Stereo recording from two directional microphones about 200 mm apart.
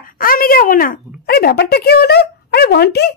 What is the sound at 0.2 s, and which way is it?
Speech, 45° left (ahead or behind).